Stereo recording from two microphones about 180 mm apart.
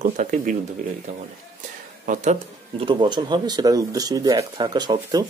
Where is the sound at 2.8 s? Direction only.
25° right (ahead or behind).